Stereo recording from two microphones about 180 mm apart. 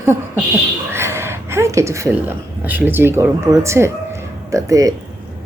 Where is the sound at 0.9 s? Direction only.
15° right (ahead or behind).